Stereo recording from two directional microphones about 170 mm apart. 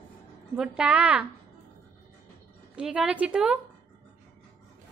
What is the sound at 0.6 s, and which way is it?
Speech, 5° right (ahead or behind).